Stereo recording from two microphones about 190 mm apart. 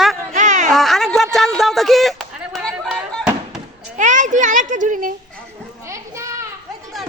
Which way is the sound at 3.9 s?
40° right (ahead or behind).